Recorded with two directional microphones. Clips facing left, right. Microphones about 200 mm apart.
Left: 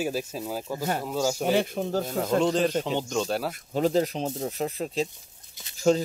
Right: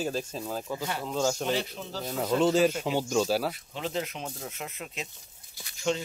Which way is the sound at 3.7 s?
40° left (ahead or behind).